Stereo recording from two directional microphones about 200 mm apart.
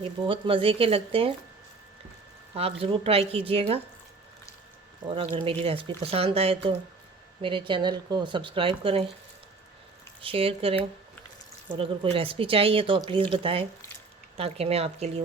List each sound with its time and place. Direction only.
0.0 s speech: 25° right (ahead or behind)
2.6 s speech: 30° right (ahead or behind)
5.0 s speech: 25° right (ahead or behind)
10.2 s speech: 25° right (ahead or behind)